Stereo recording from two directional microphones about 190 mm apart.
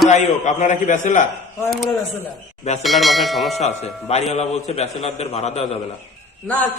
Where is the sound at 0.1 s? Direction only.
40° left (ahead or behind).